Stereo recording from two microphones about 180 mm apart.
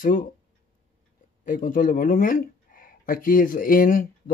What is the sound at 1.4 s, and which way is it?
Speech, 45° left (ahead or behind).